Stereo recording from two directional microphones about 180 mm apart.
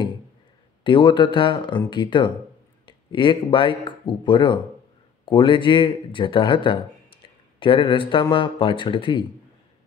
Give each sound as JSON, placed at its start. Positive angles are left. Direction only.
{"t": 0.8, "sound": "speech", "side_deg": 25}